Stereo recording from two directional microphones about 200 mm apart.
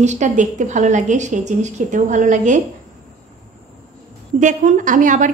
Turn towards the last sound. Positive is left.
turn(degrees=-40)  # may be behind; listen again after turning